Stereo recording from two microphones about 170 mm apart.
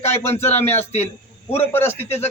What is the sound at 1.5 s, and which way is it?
Speech, 15° left (ahead or behind).